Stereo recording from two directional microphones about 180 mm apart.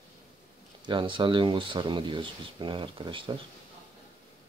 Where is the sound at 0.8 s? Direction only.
25° right (ahead or behind).